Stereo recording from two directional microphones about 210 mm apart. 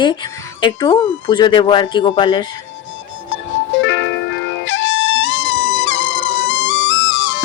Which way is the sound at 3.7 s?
60° left (ahead or behind).